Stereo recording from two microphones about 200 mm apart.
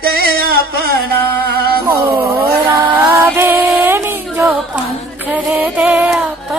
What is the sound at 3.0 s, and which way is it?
Music, 10° right (ahead or behind).